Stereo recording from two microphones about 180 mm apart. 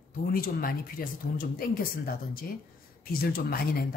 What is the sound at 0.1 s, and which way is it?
A woman's voice, 55° left (ahead or behind).